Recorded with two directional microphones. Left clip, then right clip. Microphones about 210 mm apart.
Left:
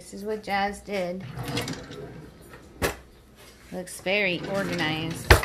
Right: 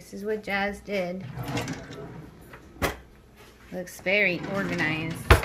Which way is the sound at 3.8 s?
Centre (ahead or behind).